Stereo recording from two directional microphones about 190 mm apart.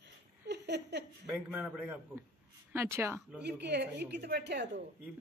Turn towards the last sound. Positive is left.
turn(degrees=-60)  # may be behind; listen again after turning